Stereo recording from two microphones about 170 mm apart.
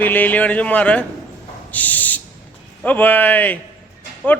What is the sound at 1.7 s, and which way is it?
Owl, 10° left (ahead or behind).